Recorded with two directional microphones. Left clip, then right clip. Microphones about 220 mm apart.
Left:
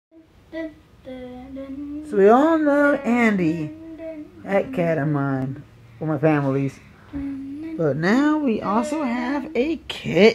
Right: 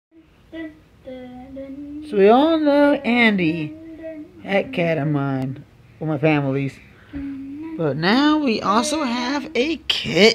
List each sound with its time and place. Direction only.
2.0 s speech: 15° right (ahead or behind)
7.7 s speech: 10° right (ahead or behind)